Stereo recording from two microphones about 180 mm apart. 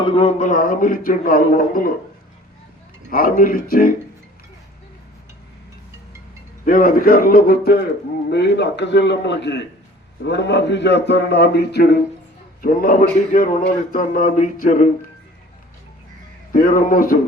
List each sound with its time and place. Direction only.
0.0 s a man's voice: 30° left (ahead or behind); by 1.9 s 50° left (ahead or behind)
3.1 s a man's voice: 50° left (ahead or behind)
6.7 s a man's voice: 50° left (ahead or behind)
8.3 s speech: 70° left (ahead or behind)
12.6 s a man's voice: 50° left (ahead or behind)
16.5 s a man's voice: 50° left (ahead or behind)